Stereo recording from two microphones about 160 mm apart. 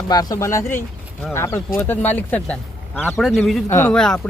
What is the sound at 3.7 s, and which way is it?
Speech, 15° left (ahead or behind).